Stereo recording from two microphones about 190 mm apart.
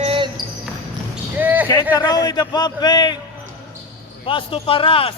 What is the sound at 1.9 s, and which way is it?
Speech, 20° left (ahead or behind).